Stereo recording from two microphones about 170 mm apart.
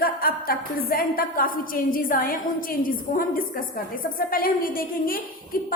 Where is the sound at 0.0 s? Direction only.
60° left (ahead or behind).